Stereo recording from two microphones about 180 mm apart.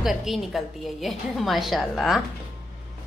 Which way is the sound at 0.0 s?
Centre (ahead or behind).